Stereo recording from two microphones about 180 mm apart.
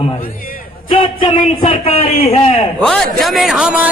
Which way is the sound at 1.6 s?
30° left (ahead or behind).